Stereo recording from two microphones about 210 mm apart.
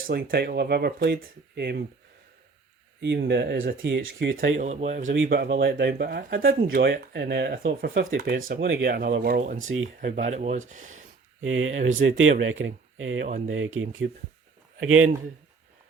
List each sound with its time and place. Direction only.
0.1 s speech: 50° right (ahead or behind)
3.0 s speech: 55° right (ahead or behind)
3.8 s speech: 60° right (ahead or behind)
4.6 s speech: 35° right (ahead or behind)
5.1 s speech: 55° right (ahead or behind)
6.9 s speech: 55° right (ahead or behind)
9.6 s speech: 70° right (ahead or behind)
10.0 s speech: 35° right (ahead or behind)
11.3 s speech: 70° right (ahead or behind)
13.2 s speech: 35° right (ahead or behind)
13.5 s speech: 70° right (ahead or behind)